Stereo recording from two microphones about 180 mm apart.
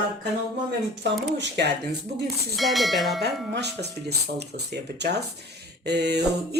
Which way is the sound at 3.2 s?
65° right (ahead or behind).